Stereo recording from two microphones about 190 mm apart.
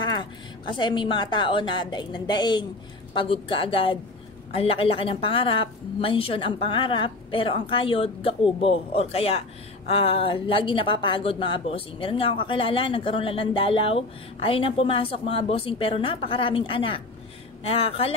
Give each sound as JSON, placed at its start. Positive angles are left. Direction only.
{"t": 0.0, "sound": "a woman's voice", "side_deg": 25}